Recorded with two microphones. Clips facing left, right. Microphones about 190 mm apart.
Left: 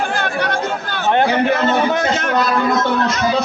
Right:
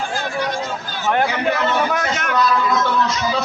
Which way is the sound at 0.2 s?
65° left (ahead or behind).